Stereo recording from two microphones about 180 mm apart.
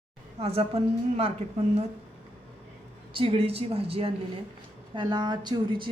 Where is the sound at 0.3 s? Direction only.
35° right (ahead or behind).